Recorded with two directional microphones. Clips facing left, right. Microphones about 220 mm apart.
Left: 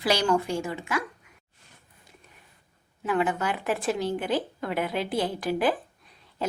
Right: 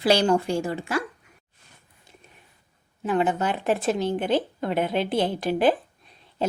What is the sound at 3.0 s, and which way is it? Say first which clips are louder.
A woman's voice: right 3 dB; 25° right (ahead or behind).